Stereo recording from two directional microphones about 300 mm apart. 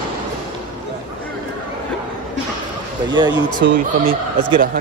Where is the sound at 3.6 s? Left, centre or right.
Right.